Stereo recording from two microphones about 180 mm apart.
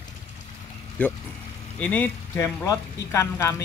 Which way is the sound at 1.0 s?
10° left (ahead or behind).